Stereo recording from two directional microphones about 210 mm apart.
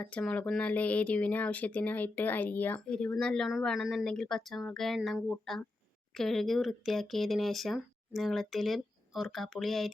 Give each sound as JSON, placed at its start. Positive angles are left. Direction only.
{"t": 0.0, "sound": "speech", "side_deg": 5}